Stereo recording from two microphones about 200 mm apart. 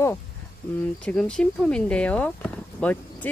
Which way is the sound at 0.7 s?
5° left (ahead or behind).